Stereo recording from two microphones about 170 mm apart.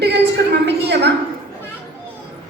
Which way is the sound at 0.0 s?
85° right.